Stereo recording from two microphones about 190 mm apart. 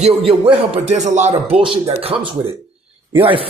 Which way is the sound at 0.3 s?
30° right (ahead or behind).